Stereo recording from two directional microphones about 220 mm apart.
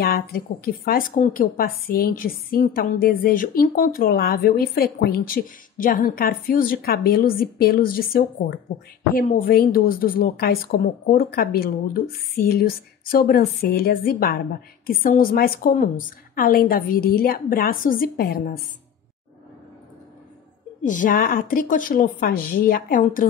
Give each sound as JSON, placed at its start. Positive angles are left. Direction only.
{"t": 0.0, "sound": "a woman's voice", "side_deg": 40}
{"t": 20.8, "sound": "a woman's voice", "side_deg": 35}